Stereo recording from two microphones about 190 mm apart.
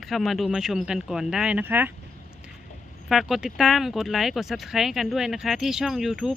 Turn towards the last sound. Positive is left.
turn(degrees=0)  # may be behind; listen again after turning